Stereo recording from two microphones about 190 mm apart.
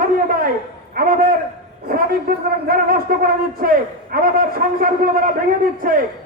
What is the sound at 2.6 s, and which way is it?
A man's voice, 50° right (ahead or behind).